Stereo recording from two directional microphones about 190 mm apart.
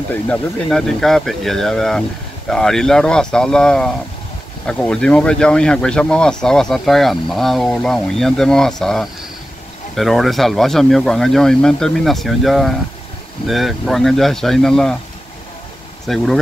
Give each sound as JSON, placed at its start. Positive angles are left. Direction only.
{"t": 0.1, "sound": "speech", "side_deg": 5}
{"t": 16.1, "sound": "speech", "side_deg": 0}